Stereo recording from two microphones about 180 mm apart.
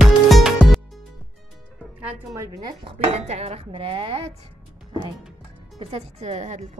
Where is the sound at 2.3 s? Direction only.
20° right (ahead or behind).